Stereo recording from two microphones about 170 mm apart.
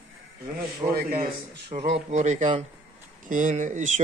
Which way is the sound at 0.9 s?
55° right (ahead or behind).